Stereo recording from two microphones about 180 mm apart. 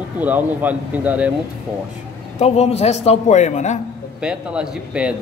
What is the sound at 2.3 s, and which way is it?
A man's voice, 35° left (ahead or behind).